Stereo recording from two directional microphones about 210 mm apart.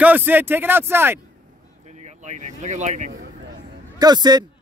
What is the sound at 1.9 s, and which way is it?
Speech, 35° right (ahead or behind).